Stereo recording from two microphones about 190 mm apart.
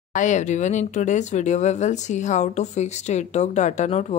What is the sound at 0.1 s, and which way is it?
A woman's voice, 40° left (ahead or behind).